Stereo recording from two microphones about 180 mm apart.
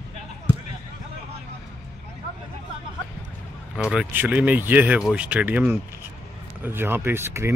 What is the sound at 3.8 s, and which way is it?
A man's voice, 5° right (ahead or behind).